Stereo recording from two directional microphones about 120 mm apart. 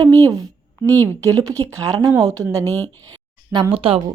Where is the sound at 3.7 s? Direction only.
50° right (ahead or behind).